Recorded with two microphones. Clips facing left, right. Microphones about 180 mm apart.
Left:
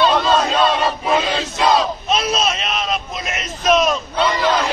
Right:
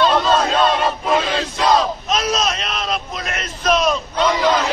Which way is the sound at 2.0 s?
30° left (ahead or behind).